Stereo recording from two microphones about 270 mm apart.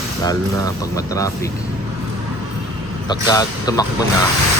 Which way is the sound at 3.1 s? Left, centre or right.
Centre.